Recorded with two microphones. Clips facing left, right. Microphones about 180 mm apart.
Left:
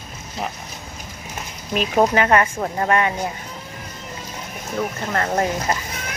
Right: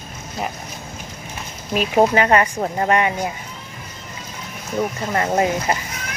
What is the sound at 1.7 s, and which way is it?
Speech, 5° right (ahead or behind).